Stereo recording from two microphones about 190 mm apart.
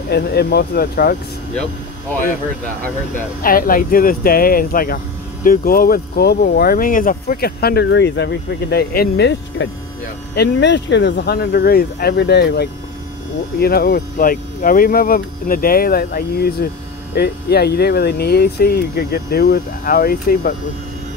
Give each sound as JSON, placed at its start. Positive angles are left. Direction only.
{"t": 0.1, "sound": "speech", "side_deg": 55}
{"t": 3.4, "sound": "speech", "side_deg": 50}